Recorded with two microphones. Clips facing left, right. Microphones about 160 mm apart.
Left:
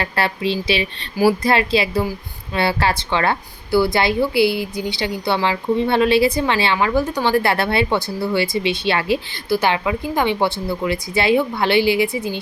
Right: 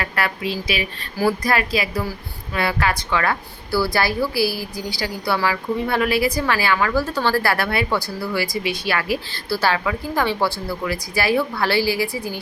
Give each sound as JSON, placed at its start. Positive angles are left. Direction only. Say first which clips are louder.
{"t": 0.0, "sound": "a woman's voice", "louder": "left 3 dB", "side_deg": 30}